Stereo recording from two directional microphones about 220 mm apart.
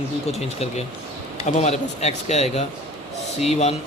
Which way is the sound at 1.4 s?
30° left (ahead or behind).